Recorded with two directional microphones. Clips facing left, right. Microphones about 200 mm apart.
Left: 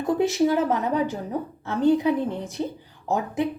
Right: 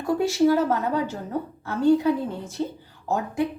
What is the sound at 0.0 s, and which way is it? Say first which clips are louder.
A woman's voice: right 1 dB; 20° left (ahead or behind).